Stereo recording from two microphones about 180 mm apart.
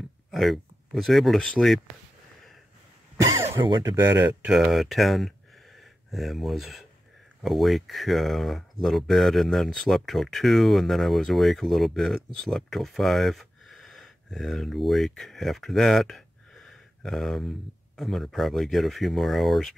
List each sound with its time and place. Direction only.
0.3 s speech: centre (ahead or behind)
3.6 s speech: 25° right (ahead or behind)
3.9 s speech: 10° right (ahead or behind)